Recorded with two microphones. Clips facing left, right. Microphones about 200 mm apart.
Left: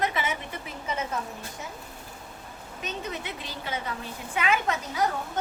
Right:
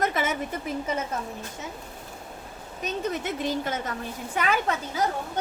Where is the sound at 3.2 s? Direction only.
45° right (ahead or behind).